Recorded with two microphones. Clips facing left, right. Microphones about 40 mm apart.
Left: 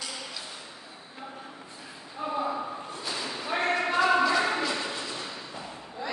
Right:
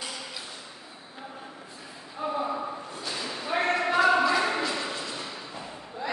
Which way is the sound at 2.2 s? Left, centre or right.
Centre.